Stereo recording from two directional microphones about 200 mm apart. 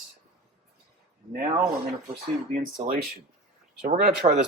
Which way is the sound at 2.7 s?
40° right (ahead or behind).